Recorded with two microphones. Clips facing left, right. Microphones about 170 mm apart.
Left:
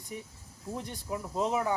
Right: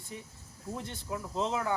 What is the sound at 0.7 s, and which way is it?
Speech, 15° left (ahead or behind).